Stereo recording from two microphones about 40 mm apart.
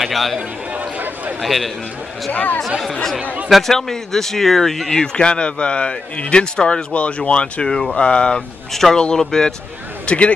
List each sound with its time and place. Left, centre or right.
0.0 s a man's voice: centre
1.4 s a man's voice: centre
2.3 s speech: left
2.8 s speech: centre
4.9 s speech: left
7.6 s speech: centre
10.0 s speech: left